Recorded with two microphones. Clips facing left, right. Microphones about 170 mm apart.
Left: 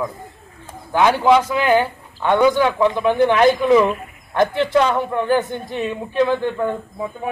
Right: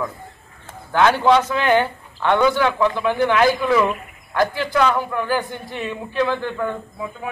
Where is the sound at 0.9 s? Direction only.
10° left (ahead or behind).